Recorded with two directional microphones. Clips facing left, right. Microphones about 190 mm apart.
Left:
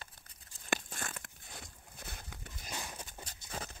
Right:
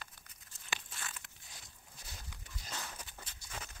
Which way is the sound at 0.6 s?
50° left (ahead or behind).